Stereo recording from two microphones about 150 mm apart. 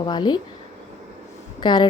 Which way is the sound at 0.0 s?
30° left (ahead or behind).